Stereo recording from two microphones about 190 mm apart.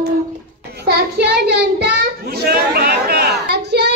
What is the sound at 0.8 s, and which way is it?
Child singing, 60° right (ahead or behind).